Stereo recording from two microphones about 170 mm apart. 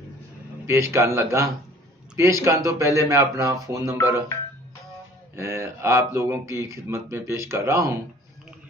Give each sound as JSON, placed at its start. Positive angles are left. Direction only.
{"t": 0.7, "sound": "speech", "side_deg": -15}
{"t": 5.3, "sound": "speech", "side_deg": -15}